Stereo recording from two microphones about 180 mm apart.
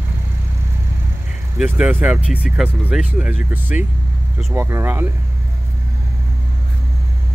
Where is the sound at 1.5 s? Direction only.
5° right (ahead or behind).